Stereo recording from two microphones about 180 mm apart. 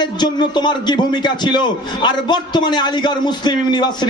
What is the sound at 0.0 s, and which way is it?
A man's voice, 25° left (ahead or behind).